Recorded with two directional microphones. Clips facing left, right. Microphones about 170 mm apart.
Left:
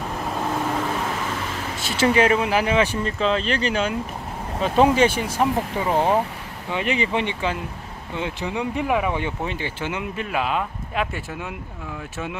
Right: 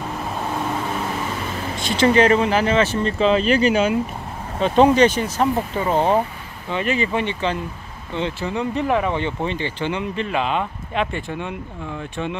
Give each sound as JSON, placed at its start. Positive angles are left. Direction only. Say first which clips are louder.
{"t": 1.8, "sound": "speech", "louder": "right 3 dB", "side_deg": 5}
{"t": 4.6, "sound": "speech", "louder": "right 3 dB", "side_deg": 5}